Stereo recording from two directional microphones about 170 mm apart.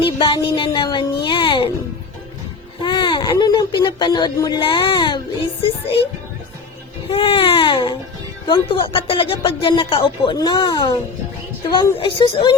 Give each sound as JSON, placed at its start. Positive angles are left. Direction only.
{"t": 0.0, "sound": "a sound", "side_deg": 30}
{"t": 2.8, "sound": "speech", "side_deg": 30}
{"t": 7.1, "sound": "speech", "side_deg": 30}